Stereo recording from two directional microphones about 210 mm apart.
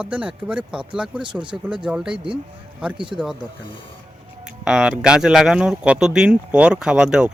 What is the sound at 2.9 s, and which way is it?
Speech, 25° right (ahead or behind).